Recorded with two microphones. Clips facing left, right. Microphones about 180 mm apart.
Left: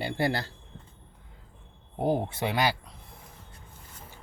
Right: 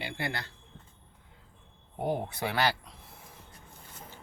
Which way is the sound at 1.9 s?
30° left (ahead or behind).